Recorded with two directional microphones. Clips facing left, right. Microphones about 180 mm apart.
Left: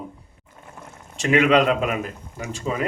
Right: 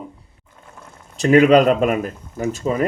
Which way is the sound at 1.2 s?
40° right (ahead or behind).